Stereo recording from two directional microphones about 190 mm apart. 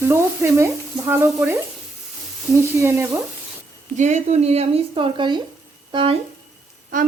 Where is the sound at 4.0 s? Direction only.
40° right (ahead or behind).